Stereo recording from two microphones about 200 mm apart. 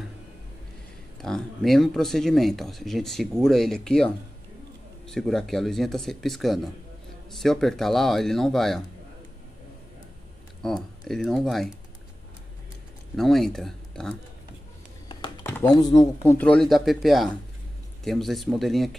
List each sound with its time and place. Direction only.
1.2 s speech: centre (ahead or behind)
10.6 s speech: centre (ahead or behind)
13.1 s speech: centre (ahead or behind)
15.4 s speech: 20° left (ahead or behind)
16.3 s speech: 5° left (ahead or behind)